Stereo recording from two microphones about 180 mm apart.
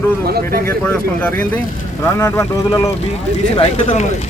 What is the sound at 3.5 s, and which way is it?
Speech, 35° left (ahead or behind).